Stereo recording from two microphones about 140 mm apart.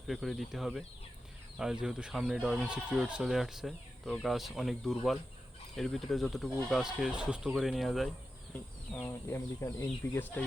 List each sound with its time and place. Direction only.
0.1 s speech: centre (ahead or behind)
8.9 s speech: 15° left (ahead or behind)